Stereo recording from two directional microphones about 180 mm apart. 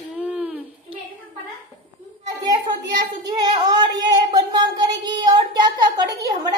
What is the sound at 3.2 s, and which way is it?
Child singing, 20° right (ahead or behind).